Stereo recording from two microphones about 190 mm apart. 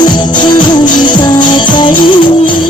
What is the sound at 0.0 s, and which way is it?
Music, 25° left (ahead or behind).